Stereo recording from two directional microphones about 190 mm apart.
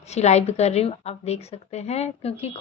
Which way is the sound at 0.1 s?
35° left (ahead or behind).